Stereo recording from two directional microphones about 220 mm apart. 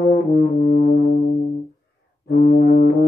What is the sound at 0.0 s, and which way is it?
Music, 45° left (ahead or behind).